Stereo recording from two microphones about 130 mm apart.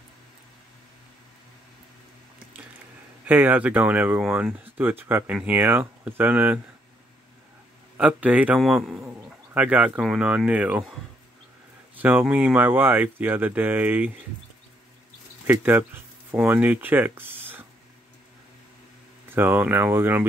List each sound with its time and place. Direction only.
3.3 s speech: 15° right (ahead or behind)
8.0 s a man's voice: 10° right (ahead or behind)
11.9 s speech: 15° right (ahead or behind)
15.4 s a sound: 15° right (ahead or behind)
16.3 s speech: 10° right (ahead or behind)
19.2 s speech: 15° right (ahead or behind)